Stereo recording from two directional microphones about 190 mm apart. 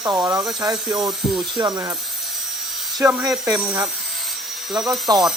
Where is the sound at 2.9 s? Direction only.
10° right (ahead or behind).